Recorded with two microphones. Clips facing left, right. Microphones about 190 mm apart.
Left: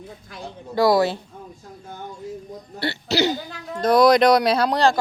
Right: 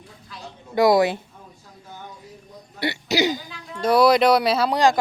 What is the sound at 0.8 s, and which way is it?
Speech, 20° right (ahead or behind).